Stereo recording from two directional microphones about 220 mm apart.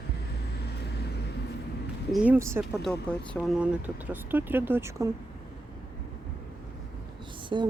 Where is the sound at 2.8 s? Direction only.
5° left (ahead or behind); by 5.1 s 15° right (ahead or behind).